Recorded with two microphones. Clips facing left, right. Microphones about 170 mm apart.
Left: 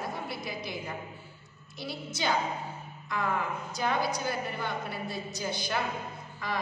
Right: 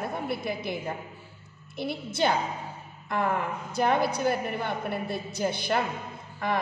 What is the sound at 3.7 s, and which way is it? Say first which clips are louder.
A woman's voice: right 6 dB; 55° right (ahead or behind).